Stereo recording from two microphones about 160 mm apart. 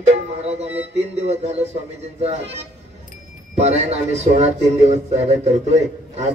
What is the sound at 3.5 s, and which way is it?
Speech, 45° right (ahead or behind).